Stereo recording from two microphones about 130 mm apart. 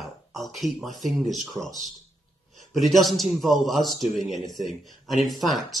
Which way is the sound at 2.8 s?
Centre (ahead or behind).